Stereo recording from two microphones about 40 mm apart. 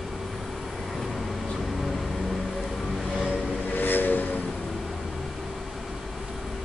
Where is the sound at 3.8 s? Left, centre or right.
Left.